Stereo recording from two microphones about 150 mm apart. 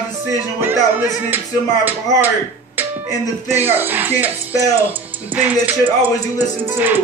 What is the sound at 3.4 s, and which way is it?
Music, 15° right (ahead or behind).